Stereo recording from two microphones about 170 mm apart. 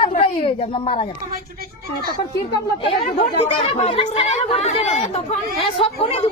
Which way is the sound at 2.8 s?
35° left (ahead or behind).